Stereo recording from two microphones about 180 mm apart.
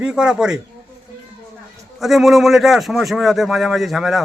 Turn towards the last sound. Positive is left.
turn(degrees=0)  # may be behind; listen again after turning